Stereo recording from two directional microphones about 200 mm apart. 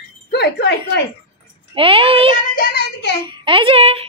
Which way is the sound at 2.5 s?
50° left (ahead or behind).